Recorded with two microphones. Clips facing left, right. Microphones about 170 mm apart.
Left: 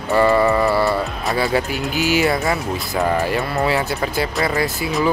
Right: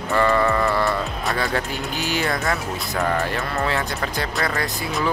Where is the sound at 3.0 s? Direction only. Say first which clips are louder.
Left 4 dB; 15° left (ahead or behind).